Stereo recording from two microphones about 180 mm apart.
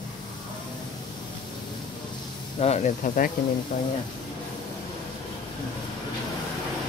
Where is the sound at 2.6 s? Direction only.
40° left (ahead or behind).